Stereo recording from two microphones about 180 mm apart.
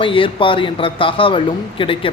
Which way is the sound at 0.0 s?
30° left (ahead or behind).